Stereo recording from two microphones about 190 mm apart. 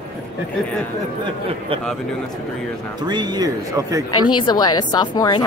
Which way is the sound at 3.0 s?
20° right (ahead or behind).